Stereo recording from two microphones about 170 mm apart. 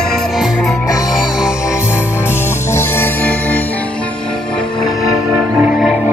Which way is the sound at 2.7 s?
15° left (ahead or behind).